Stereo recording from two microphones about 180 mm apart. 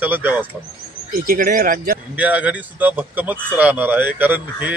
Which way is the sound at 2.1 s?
10° right (ahead or behind).